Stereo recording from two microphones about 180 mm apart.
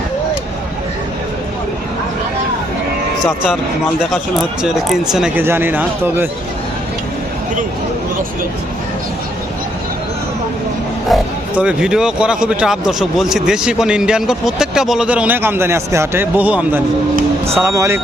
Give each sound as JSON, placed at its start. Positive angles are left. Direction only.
{"t": 4.9, "sound": "speech", "side_deg": -5}
{"t": 11.1, "sound": "speech", "side_deg": -5}